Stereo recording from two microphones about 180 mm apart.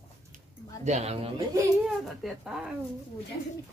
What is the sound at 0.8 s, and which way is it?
Speech, 35° right (ahead or behind).